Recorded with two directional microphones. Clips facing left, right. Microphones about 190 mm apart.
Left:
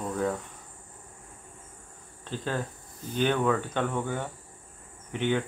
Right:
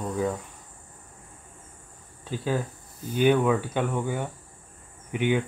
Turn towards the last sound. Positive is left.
turn(degrees=-10)  # may be behind; listen again after turning